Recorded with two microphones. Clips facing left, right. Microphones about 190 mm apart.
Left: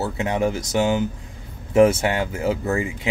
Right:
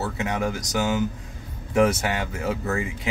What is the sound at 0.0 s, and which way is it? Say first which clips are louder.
Speech: left 4 dB; 30° left (ahead or behind).